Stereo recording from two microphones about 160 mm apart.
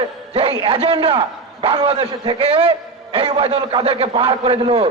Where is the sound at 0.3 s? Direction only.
35° right (ahead or behind).